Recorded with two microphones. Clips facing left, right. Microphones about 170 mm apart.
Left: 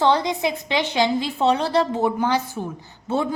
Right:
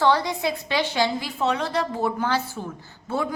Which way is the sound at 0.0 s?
20° left (ahead or behind).